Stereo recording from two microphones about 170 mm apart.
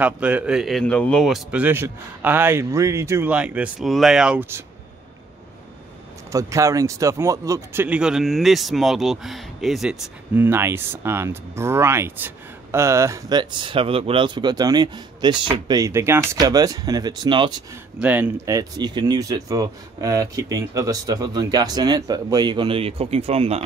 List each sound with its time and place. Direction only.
0.0 s speech: 5° right (ahead or behind)
6.3 s speech: 20° right (ahead or behind)
17.9 s speech: 10° right (ahead or behind)
18.5 s speech: 25° right (ahead or behind)